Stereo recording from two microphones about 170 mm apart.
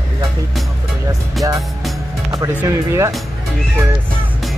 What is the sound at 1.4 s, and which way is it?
Speech, centre (ahead or behind).